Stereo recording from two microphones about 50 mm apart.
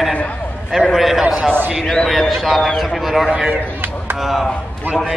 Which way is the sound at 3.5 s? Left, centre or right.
Right.